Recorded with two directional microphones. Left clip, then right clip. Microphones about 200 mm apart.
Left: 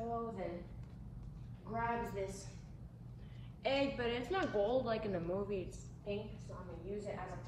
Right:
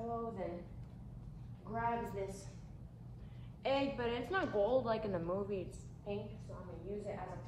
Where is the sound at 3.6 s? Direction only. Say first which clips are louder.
Even; 15° right (ahead or behind).